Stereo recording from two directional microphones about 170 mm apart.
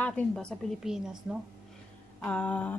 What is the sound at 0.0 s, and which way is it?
A woman's voice, 5° left (ahead or behind).